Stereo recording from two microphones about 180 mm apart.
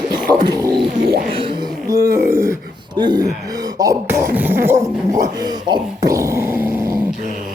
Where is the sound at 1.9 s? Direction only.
65° right (ahead or behind).